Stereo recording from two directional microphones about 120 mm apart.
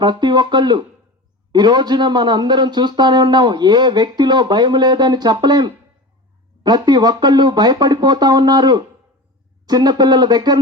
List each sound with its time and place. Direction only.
0.0 s a man's voice: 40° right (ahead or behind)